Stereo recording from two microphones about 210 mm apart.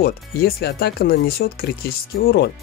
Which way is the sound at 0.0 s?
45° left (ahead or behind).